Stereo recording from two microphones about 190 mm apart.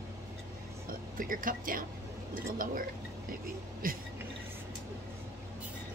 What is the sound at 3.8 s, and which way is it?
Music, 50° right (ahead or behind).